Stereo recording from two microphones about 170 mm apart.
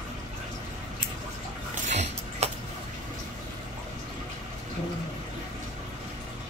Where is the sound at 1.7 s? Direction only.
40° right (ahead or behind).